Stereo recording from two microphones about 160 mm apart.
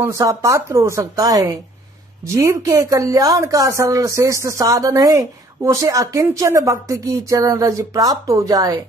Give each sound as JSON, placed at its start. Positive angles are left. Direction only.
{"t": 0.0, "sound": "speech", "side_deg": -20}